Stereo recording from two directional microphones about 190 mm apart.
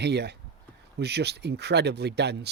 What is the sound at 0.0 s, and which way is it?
A man's voice, 60° right (ahead or behind).